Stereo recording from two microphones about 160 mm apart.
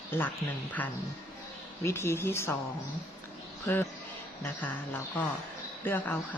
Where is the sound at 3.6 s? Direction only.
15° left (ahead or behind).